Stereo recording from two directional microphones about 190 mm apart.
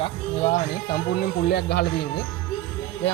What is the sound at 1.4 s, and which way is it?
Speech, 60° left (ahead or behind).